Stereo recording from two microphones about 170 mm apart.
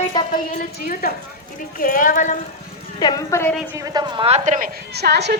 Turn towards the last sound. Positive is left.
turn(degrees=-75)  # may be behind; listen again after turning